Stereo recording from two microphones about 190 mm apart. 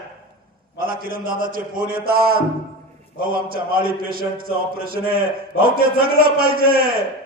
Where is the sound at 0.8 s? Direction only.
50° right (ahead or behind).